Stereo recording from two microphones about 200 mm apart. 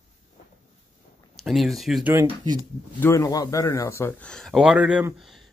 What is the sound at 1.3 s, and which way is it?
Speech, centre (ahead or behind).